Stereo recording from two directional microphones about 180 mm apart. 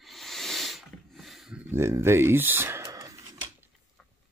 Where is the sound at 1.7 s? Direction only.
15° right (ahead or behind).